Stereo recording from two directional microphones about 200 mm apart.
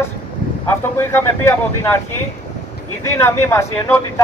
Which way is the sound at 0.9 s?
10° left (ahead or behind).